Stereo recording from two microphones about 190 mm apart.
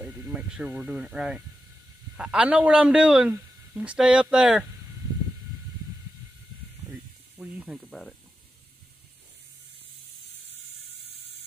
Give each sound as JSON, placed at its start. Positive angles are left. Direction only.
{"t": 0.0, "sound": "a man's voice", "side_deg": -5}
{"t": 6.9, "sound": "snake", "side_deg": -5}